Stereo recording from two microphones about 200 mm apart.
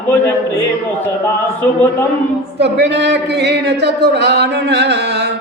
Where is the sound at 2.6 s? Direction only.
55° right (ahead or behind).